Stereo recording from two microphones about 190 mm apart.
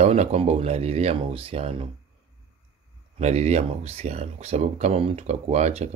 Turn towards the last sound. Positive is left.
turn(degrees=-35)  # may be behind; listen again after turning